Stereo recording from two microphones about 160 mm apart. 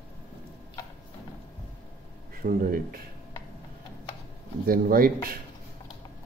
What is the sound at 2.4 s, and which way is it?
Speech, 65° right (ahead or behind).